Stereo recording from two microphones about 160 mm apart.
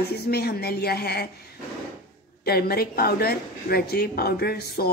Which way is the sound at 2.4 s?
75° left (ahead or behind).